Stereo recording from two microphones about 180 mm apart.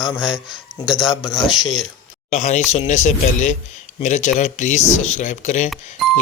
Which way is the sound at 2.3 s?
40° left (ahead or behind).